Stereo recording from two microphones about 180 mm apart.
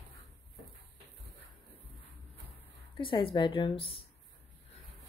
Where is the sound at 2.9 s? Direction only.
30° left (ahead or behind).